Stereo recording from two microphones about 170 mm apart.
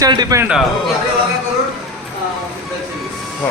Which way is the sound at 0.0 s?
20° right (ahead or behind).